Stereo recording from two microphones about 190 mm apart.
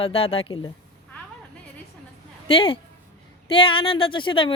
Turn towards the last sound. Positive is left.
turn(degrees=25)  # may be behind; listen again after turning